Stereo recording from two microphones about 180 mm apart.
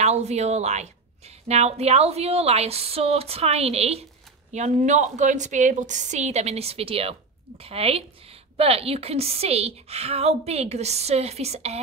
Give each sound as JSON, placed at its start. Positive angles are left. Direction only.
{"t": 0.0, "sound": "a woman's voice", "side_deg": -40}